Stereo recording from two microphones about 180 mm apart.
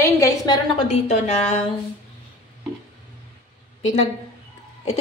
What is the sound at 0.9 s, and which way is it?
Speech, 40° left (ahead or behind).